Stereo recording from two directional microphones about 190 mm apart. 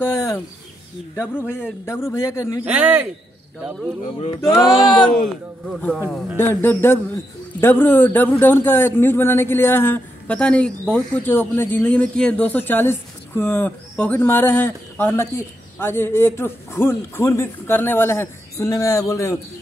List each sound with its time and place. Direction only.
0.0 s bird: 15° left (ahead or behind)
1.4 s a man's voice: 10° left (ahead or behind)
2.6 s a man's voice: 5° right (ahead or behind)
4.5 s a sound: 20° left (ahead or behind)
5.1 s a man's voice: centre (ahead or behind)